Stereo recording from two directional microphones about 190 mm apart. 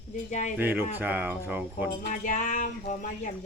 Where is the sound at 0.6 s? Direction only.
10° right (ahead or behind).